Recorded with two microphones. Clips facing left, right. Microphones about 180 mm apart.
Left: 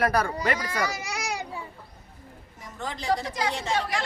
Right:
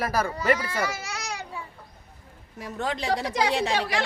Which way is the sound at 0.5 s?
40° left (ahead or behind).